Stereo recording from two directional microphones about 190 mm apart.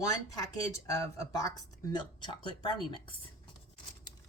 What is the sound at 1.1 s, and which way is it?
A woman's voice, 15° left (ahead or behind).